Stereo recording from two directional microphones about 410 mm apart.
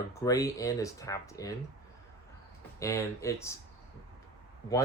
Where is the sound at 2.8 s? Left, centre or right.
Centre.